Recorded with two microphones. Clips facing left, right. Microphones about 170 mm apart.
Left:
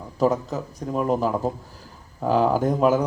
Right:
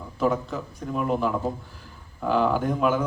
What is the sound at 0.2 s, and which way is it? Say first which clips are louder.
A man's voice: left 3 dB; 40° left (ahead or behind).